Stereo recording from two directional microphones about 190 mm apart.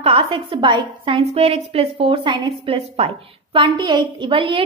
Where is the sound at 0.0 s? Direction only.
30° right (ahead or behind).